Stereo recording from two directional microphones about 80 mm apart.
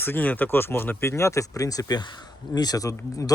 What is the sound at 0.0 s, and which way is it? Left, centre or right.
Speech, left.